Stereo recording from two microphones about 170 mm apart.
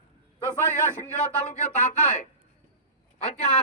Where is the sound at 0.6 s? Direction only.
15° left (ahead or behind).